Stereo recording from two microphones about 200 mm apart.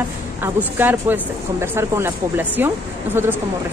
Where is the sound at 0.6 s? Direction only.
10° right (ahead or behind).